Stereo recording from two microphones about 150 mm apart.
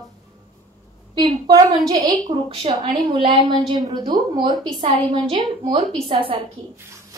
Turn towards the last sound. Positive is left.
turn(degrees=-35)  # may be behind; listen again after turning